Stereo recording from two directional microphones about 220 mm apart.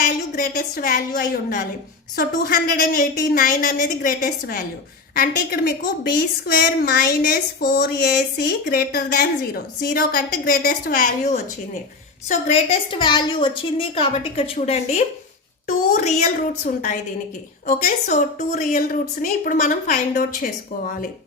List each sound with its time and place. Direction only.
0.0 s a woman's voice: 40° left (ahead or behind)